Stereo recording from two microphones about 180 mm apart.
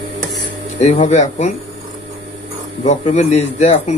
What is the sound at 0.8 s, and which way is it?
Speech, 40° left (ahead or behind).